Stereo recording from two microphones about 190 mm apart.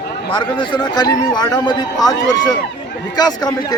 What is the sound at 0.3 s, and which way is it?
A man's voice, 25° left (ahead or behind).